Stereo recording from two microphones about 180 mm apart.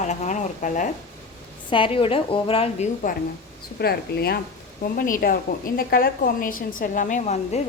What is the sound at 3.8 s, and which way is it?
Speech, 60° left (ahead or behind).